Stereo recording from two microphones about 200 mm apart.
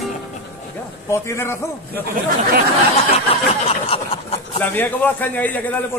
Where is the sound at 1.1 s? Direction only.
15° left (ahead or behind).